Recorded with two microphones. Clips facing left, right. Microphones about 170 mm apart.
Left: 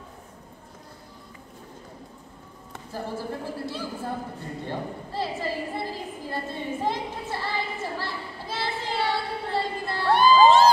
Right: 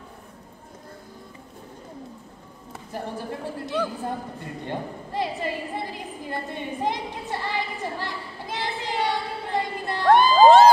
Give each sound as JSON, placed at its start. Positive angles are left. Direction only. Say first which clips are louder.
{"t": 2.9, "sound": "speech", "louder": "even", "side_deg": -20}
{"t": 4.6, "sound": "a sound", "louder": "right 2 dB", "side_deg": -15}
{"t": 10.0, "sound": "crowd", "louder": "right 3 dB", "side_deg": -50}